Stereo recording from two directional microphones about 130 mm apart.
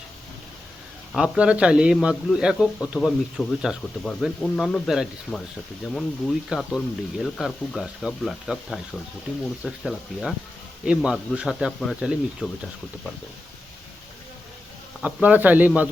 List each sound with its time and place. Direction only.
1.1 s speech: 5° right (ahead or behind)
5.3 s speech: 20° left (ahead or behind)
5.9 s speech: 5° left (ahead or behind)
15.0 s speech: 10° right (ahead or behind)